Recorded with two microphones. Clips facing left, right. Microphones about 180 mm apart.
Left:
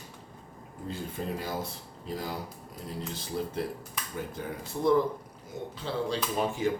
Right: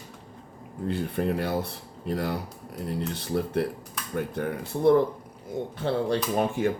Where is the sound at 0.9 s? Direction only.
65° right (ahead or behind).